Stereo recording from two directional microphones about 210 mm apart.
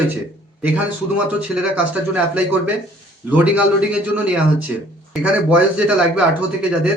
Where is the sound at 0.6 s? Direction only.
5° right (ahead or behind).